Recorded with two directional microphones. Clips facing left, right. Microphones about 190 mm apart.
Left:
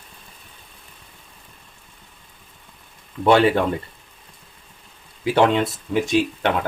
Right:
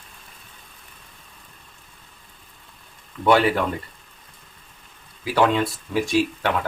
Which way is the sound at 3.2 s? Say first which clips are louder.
Left 2 dB; 25° left (ahead or behind).